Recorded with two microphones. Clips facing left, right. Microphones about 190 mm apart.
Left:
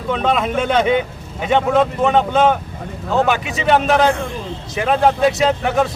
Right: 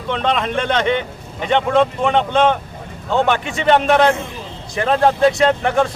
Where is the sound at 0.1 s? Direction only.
5° left (ahead or behind).